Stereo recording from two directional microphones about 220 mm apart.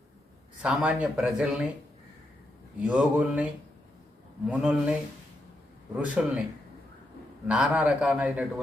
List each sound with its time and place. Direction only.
0.6 s a man's voice: 5° right (ahead or behind)
2.8 s a man's voice: 5° right (ahead or behind)
7.4 s a man's voice: 5° right (ahead or behind)